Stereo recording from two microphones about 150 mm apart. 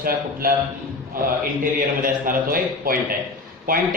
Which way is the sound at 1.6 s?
70° right (ahead or behind).